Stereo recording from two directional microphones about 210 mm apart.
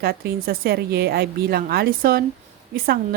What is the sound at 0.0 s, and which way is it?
A woman's voice, 45° right (ahead or behind).